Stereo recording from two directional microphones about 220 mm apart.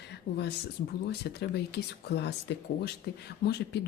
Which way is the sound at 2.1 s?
50° left (ahead or behind).